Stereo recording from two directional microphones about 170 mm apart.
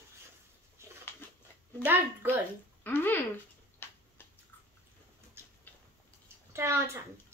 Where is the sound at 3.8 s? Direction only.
15° left (ahead or behind).